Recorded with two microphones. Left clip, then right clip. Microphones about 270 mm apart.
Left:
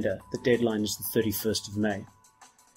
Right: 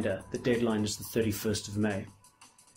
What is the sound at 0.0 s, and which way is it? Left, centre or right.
Speech, left.